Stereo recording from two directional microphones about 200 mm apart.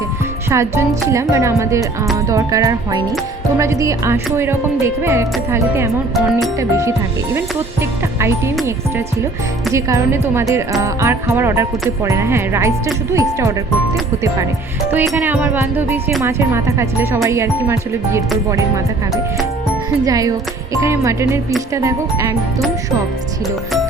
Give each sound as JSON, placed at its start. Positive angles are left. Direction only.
{"t": 0.5, "sound": "speech", "side_deg": -15}
{"t": 6.1, "sound": "speech", "side_deg": 0}
{"t": 6.6, "sound": "speech", "side_deg": -15}
{"t": 9.7, "sound": "speech", "side_deg": -15}
{"t": 14.8, "sound": "speech", "side_deg": -10}
{"t": 20.1, "sound": "speech", "side_deg": -15}